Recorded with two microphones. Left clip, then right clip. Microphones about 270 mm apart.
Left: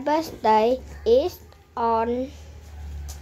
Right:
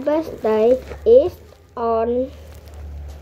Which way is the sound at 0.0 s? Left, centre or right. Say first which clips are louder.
Right 2 dB; centre.